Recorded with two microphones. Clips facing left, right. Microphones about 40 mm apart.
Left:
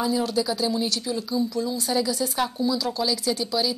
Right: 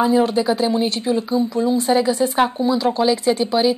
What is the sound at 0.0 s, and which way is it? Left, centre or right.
Speech, right.